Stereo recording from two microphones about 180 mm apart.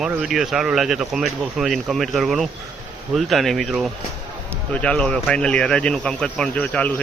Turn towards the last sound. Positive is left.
turn(degrees=10)  # may be behind; listen again after turning